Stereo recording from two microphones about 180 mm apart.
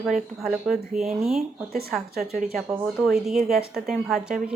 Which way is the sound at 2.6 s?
10° right (ahead or behind).